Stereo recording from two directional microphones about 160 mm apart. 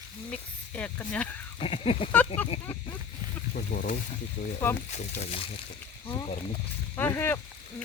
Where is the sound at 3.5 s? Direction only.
60° left (ahead or behind).